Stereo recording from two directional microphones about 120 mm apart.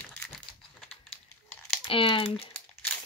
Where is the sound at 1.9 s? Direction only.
45° left (ahead or behind).